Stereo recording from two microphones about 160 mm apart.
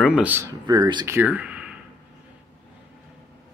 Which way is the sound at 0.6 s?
25° right (ahead or behind).